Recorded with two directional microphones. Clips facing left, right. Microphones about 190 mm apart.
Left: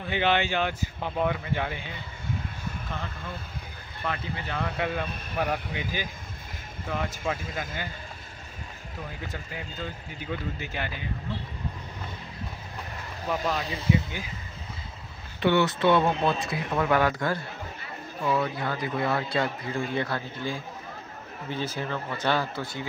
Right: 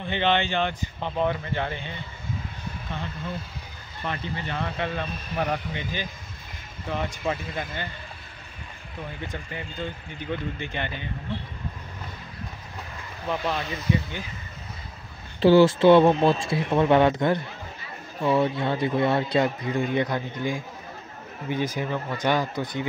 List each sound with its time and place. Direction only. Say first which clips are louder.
0.0 s speech: right 1 dB; 10° left (ahead or behind)
4.0 s speech: right 1 dB; centre (ahead or behind)
9.2 s speech: right 2 dB; 5° left (ahead or behind)
13.3 s speech: right 1 dB; 5° left (ahead or behind)
15.4 s a man's voice: right 7 dB; 30° right (ahead or behind)